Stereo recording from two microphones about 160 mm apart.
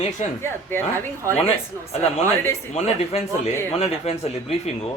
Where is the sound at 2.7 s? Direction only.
40° left (ahead or behind).